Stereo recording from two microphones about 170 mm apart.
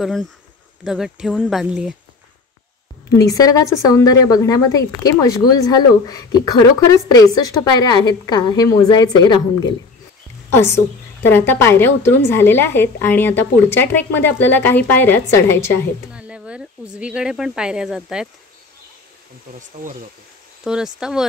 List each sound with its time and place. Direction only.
0.8 s speech: centre (ahead or behind)
3.2 s a woman's voice: 20° left (ahead or behind)
10.5 s a woman's voice: 15° left (ahead or behind)
16.1 s speech: 5° right (ahead or behind)
20.6 s speech: 5° right (ahead or behind)